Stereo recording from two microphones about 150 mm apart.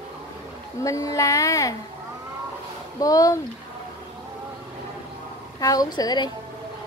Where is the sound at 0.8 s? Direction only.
20° left (ahead or behind).